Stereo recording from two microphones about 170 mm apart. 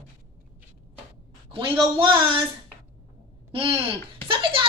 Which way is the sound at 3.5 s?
35° right (ahead or behind).